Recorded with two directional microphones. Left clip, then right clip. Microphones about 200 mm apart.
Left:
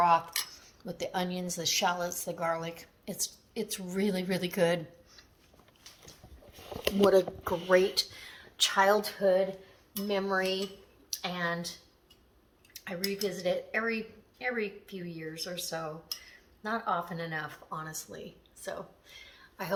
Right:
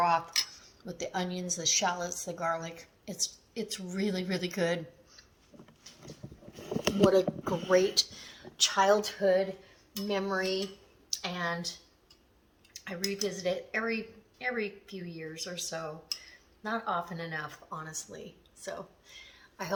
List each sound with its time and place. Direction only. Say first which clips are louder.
0.9 s speech: left 1 dB; 25° left (ahead or behind)
7.1 s speech: left 1 dB; 15° left (ahead or behind)
12.7 s speech: even; 5° left (ahead or behind)